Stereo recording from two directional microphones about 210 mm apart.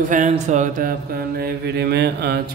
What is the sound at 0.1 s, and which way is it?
Mantra, 35° right (ahead or behind).